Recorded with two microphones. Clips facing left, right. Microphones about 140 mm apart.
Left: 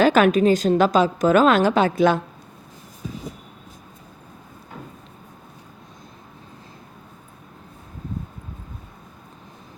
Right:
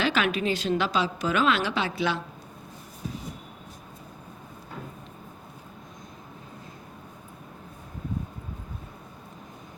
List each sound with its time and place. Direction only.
0.0 s a woman's voice: 45° left (ahead or behind)